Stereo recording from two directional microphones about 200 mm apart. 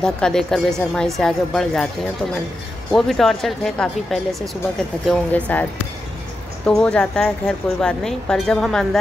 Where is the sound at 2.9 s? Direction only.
Centre (ahead or behind).